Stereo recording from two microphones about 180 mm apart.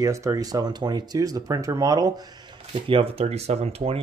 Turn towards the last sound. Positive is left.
turn(degrees=-35)  # may be behind; listen again after turning